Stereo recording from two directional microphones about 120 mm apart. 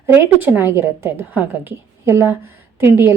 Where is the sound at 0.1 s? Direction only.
20° right (ahead or behind).